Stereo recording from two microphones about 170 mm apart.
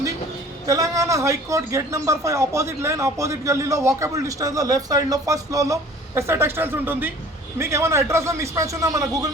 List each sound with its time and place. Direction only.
0.7 s a man's voice: 20° right (ahead or behind)